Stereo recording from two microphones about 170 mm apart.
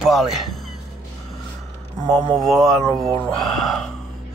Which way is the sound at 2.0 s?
25° right (ahead or behind).